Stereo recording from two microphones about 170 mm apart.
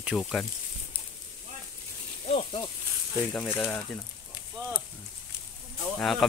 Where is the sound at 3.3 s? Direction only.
10° left (ahead or behind).